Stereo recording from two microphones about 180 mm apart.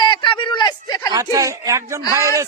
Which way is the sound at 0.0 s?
25° left (ahead or behind).